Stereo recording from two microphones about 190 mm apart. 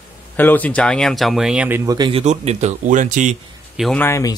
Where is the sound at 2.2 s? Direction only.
35° right (ahead or behind).